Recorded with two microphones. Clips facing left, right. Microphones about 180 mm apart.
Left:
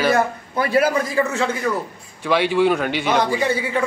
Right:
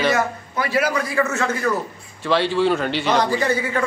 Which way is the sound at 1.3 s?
15° left (ahead or behind).